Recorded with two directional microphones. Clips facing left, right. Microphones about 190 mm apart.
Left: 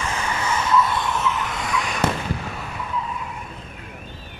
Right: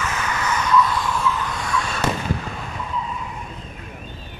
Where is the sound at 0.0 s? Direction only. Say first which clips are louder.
Even; 30° left (ahead or behind).